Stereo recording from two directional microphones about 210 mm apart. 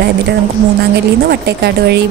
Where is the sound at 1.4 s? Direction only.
50° right (ahead or behind).